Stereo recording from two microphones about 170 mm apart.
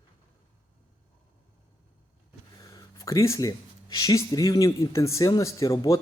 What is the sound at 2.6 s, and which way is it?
Speech, 20° left (ahead or behind).